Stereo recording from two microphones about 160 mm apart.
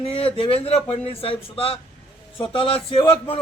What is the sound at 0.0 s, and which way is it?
A man's voice, 35° left (ahead or behind).